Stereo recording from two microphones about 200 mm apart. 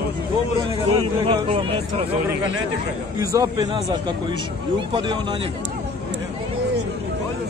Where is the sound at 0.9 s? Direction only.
30° right (ahead or behind).